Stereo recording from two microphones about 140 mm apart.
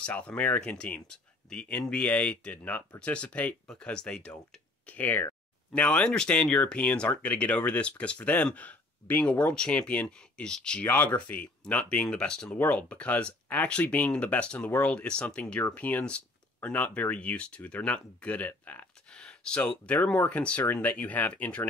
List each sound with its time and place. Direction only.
0.0 s speech: 10° left (ahead or behind)